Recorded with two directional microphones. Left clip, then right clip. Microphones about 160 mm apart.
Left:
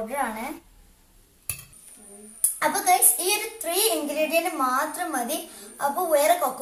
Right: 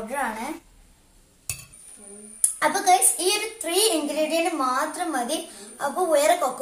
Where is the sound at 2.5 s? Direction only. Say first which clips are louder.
Right 2 dB; 10° left (ahead or behind).